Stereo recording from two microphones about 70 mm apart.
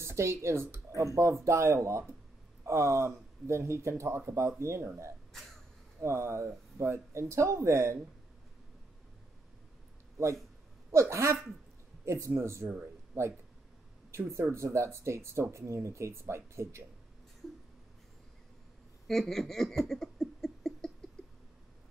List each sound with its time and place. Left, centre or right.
0.0 s speech: right
10.9 s speech: right
14.1 s speech: right
19.0 s a sound: centre